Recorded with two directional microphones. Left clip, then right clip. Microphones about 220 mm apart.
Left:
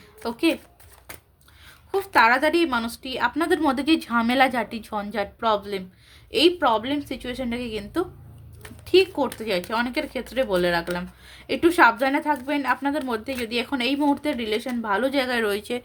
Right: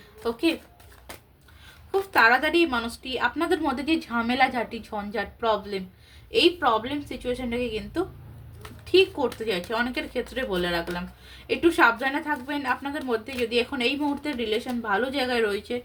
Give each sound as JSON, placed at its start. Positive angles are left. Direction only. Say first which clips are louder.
{"t": 0.2, "sound": "speech", "louder": "left 2 dB", "side_deg": 50}
{"t": 2.1, "sound": "speech", "louder": "left 2 dB", "side_deg": 50}